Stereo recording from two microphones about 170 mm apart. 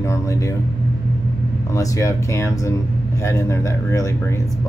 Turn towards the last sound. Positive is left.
turn(degrees=15)  # may be behind; listen again after turning